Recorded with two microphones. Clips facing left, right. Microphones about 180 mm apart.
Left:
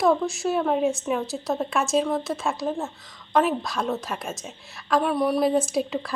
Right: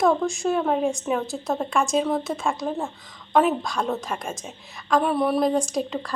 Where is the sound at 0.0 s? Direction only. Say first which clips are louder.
Right 1 dB; 5° left (ahead or behind).